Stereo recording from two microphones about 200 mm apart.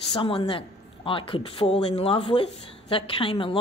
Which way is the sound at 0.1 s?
25° left (ahead or behind).